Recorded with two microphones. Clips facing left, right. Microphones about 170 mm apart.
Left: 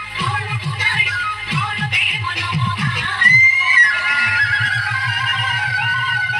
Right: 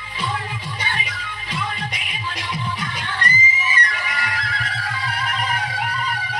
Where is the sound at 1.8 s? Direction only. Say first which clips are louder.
Left 2 dB; 10° left (ahead or behind).